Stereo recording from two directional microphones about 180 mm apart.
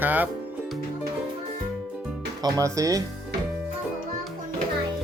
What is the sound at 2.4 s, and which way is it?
Speech, 20° right (ahead or behind).